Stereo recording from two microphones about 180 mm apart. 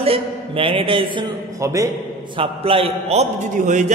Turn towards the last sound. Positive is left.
turn(degrees=-45)  # may be behind; listen again after turning